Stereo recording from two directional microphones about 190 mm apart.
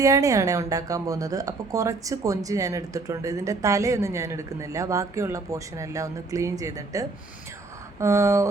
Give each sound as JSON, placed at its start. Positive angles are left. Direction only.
{"t": 0.0, "sound": "speech", "side_deg": -15}